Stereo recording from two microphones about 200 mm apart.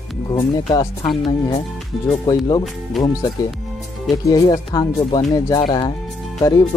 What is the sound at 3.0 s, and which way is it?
Speech, centre (ahead or behind).